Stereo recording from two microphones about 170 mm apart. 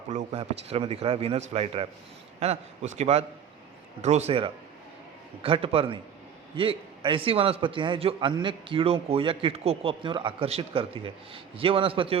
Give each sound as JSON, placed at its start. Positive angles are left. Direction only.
{"t": 0.3, "sound": "a man's voice", "side_deg": -35}